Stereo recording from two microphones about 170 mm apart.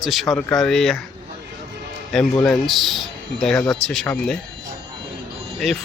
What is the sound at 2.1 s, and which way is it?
A man's voice, 5° left (ahead or behind).